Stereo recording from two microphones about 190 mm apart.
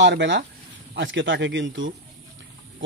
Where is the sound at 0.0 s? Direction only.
70° right (ahead or behind).